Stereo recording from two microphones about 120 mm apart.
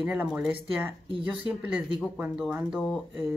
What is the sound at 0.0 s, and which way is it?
Speech, 10° right (ahead or behind).